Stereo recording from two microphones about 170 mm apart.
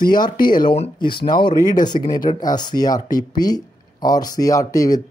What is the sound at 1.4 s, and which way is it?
Speech, 25° left (ahead or behind).